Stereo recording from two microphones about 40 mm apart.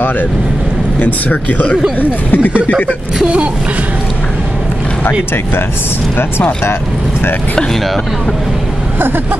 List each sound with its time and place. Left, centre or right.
1.0 s speech: left
2.0 s speech: left